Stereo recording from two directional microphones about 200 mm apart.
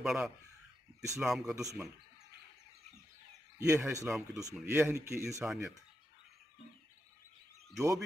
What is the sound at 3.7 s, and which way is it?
Speech, 10° right (ahead or behind).